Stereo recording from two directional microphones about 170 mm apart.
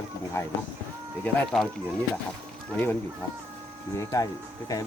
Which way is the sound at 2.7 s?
10° left (ahead or behind).